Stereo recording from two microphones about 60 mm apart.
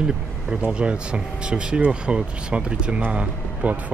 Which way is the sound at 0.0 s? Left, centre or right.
Centre.